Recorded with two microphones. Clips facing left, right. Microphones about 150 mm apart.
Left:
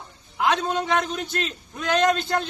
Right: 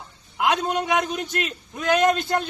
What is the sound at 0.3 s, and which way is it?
A man's voice, 10° right (ahead or behind).